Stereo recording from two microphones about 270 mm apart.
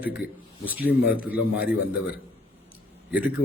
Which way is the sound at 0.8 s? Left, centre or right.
Left.